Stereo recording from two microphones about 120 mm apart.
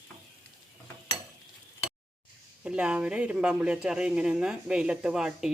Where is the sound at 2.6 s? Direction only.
10° right (ahead or behind).